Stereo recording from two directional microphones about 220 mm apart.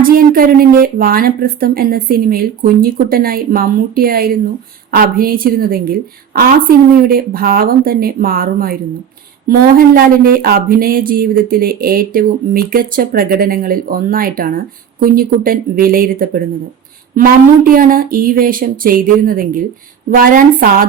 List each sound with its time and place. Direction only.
0.0 s speech: 40° right (ahead or behind)